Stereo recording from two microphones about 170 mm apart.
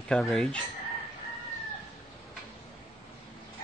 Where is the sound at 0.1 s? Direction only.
Centre (ahead or behind).